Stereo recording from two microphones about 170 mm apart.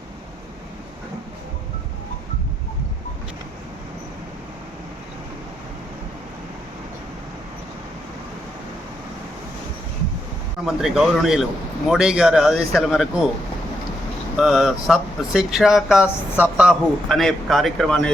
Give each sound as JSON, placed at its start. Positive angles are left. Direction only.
{"t": 10.7, "sound": "speech", "side_deg": 0}
{"t": 14.3, "sound": "speech", "side_deg": 0}